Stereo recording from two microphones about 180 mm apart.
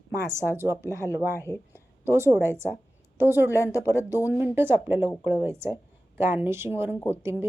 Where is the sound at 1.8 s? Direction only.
15° right (ahead or behind).